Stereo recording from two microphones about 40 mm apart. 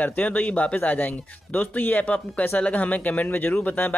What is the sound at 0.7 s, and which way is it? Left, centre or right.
A man's voice, left.